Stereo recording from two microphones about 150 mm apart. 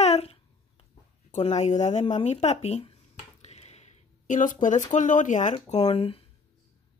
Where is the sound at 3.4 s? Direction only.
45° left (ahead or behind).